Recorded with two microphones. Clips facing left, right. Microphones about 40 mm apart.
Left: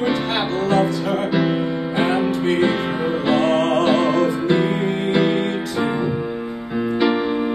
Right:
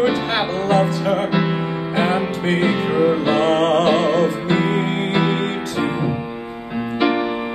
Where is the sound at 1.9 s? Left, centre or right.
Right.